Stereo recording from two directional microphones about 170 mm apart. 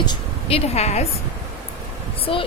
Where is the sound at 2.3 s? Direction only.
35° left (ahead or behind).